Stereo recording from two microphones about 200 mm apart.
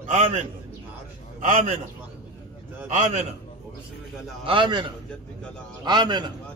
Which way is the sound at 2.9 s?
35° right (ahead or behind).